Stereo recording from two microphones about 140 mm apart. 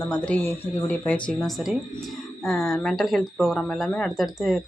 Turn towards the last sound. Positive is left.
turn(degrees=0)  # may be behind; listen again after turning